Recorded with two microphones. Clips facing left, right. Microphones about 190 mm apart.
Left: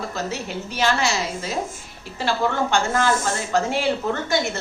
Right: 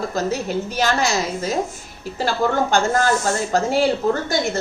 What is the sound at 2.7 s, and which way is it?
A woman's voice, 40° right (ahead or behind).